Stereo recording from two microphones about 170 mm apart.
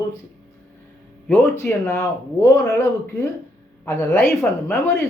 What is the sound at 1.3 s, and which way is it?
Speech, 15° left (ahead or behind).